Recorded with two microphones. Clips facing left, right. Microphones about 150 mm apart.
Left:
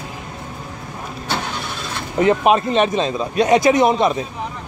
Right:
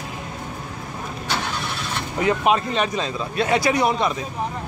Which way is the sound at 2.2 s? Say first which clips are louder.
Left 5 dB; 25° left (ahead or behind).